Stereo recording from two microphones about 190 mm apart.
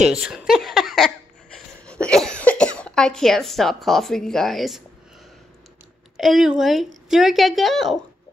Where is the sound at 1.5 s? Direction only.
5° left (ahead or behind).